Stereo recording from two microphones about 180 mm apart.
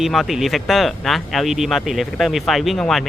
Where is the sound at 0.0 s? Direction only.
Centre (ahead or behind).